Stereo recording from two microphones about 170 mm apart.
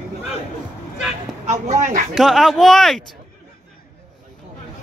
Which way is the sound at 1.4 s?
45° right (ahead or behind).